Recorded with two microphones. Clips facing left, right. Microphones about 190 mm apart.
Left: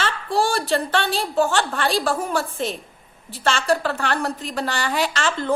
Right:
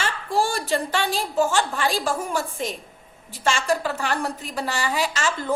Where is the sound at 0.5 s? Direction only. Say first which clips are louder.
Left 3 dB; 10° right (ahead or behind).